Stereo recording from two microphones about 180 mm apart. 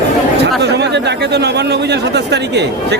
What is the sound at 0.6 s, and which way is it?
Speech, 70° right (ahead or behind).